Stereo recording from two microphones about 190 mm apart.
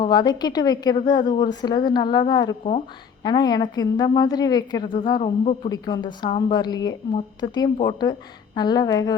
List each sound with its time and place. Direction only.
0.0 s a woman's voice: 20° left (ahead or behind)